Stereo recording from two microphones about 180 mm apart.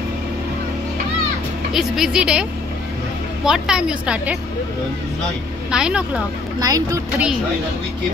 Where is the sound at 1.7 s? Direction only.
Centre (ahead or behind).